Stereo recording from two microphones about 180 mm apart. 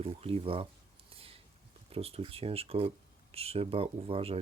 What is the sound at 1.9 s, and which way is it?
Speech, 35° right (ahead or behind).